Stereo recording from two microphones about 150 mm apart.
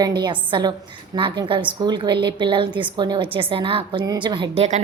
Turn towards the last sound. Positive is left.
turn(degrees=-30)  # may be behind; listen again after turning